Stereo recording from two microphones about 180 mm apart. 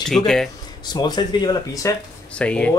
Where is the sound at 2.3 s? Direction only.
5° left (ahead or behind).